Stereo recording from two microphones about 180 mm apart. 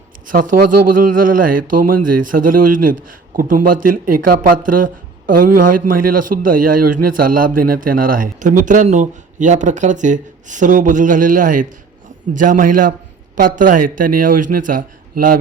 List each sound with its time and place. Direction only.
0.3 s speech: 50° right (ahead or behind)